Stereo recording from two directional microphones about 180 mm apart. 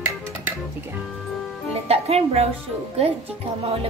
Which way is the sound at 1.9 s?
35° right (ahead or behind).